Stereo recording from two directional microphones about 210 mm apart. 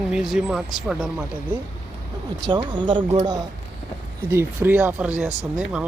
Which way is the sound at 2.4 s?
20° right (ahead or behind).